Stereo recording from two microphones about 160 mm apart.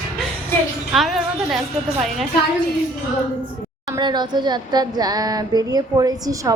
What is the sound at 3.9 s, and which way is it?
Speech, 25° right (ahead or behind).